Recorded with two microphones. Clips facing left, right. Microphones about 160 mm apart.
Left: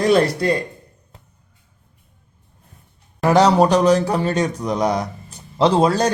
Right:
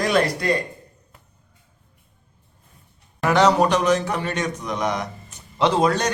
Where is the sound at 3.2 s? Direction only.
35° left (ahead or behind).